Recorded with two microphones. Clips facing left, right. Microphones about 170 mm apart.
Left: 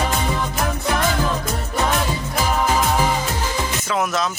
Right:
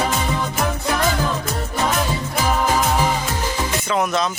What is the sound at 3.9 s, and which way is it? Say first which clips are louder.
Music: right 2 dB; centre (ahead or behind).